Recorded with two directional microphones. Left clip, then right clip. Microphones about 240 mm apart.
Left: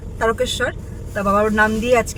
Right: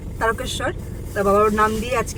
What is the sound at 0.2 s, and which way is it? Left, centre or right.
Speech, centre.